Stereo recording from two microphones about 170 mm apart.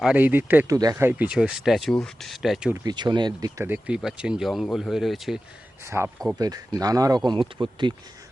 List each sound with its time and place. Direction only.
0.0 s speech: 10° right (ahead or behind)
2.8 s speech: 25° right (ahead or behind)
3.6 s speech: 10° right (ahead or behind)
5.8 s speech: 15° right (ahead or behind)